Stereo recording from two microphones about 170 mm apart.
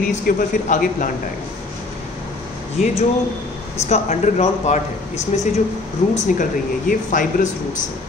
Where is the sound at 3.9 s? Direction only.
40° left (ahead or behind).